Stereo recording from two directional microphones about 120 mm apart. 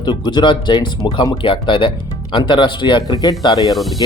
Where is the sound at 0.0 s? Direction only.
35° left (ahead or behind).